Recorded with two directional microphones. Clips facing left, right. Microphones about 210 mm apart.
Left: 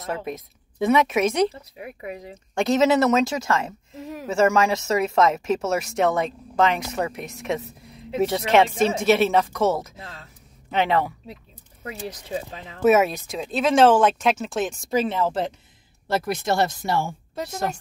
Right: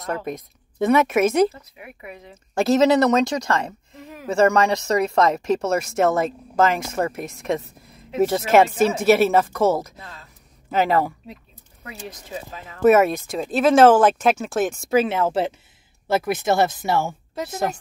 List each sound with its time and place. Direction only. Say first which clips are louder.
0.3 s speech: right 2 dB; centre (ahead or behind)
1.5 s speech: left 4 dB; 35° left (ahead or behind)
2.5 s speech: right 2 dB; 5° right (ahead or behind)
3.9 s speech: left 5 dB; 35° left (ahead or behind)
4.3 s speech: right 2 dB; centre (ahead or behind)
11.8 s speech: left 3 dB; 30° left (ahead or behind)
12.8 s speech: right 3 dB; centre (ahead or behind)